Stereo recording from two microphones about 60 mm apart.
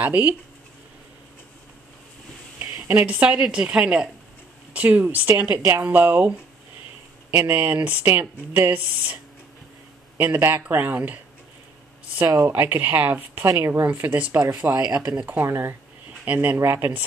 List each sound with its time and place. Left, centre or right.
0.0 s speech: right
2.9 s speech: right
3.3 s a woman's voice: centre
4.7 s speech: right
5.5 s speech: right
5.9 s speech: right
7.5 s speech: right
12.4 s speech: right
13.5 s speech: right
13.8 s speech: right
14.5 s speech: right
15.4 s speech: right
16.3 s speech: right
16.5 s speech: right